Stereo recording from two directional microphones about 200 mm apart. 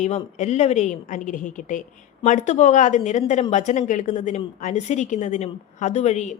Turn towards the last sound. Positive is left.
turn(degrees=35)  # may be behind; listen again after turning